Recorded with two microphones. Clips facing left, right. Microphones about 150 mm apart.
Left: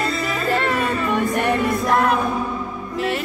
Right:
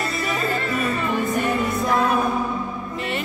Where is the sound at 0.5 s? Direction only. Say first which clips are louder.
Left 7 dB; 70° left (ahead or behind).